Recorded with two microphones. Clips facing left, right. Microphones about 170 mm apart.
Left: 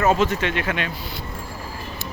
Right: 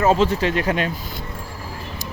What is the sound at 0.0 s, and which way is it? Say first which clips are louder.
Speech: right 2 dB; 30° right (ahead or behind).